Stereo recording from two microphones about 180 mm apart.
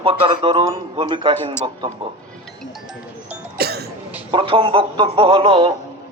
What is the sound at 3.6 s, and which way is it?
Cough, 60° right (ahead or behind).